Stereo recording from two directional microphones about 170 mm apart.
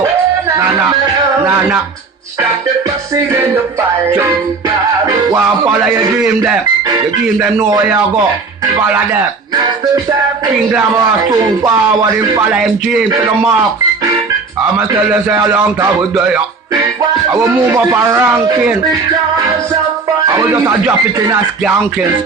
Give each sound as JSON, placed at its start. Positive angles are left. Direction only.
{"t": 3.3, "sound": "speech", "side_deg": -15}
{"t": 17.3, "sound": "speech", "side_deg": -20}
{"t": 20.2, "sound": "speech", "side_deg": -15}